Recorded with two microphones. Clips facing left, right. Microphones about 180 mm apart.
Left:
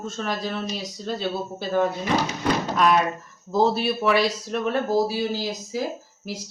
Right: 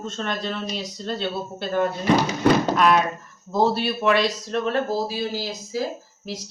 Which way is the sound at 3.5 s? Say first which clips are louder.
Even; centre (ahead or behind).